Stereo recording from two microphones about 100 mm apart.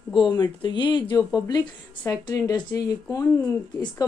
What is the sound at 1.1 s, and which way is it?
Speech, 40° left (ahead or behind).